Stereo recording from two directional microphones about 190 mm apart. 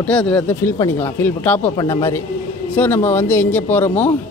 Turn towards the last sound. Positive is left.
turn(degrees=10)  # may be behind; listen again after turning